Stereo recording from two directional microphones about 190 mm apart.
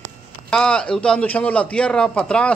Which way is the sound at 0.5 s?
5° left (ahead or behind).